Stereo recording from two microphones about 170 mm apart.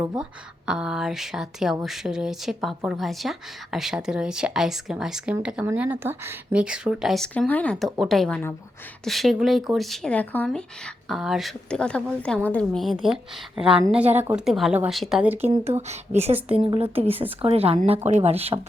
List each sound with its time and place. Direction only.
0.2 s a woman's voice: 5° right (ahead or behind)
15.7 s speech: 40° right (ahead or behind)